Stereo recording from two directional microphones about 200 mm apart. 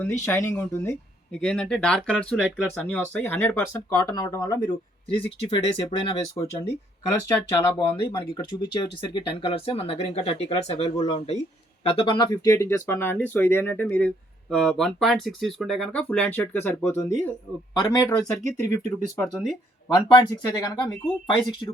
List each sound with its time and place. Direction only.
0.0 s speech: 15° left (ahead or behind)